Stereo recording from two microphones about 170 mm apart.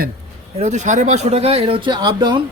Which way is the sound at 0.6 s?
45° right (ahead or behind).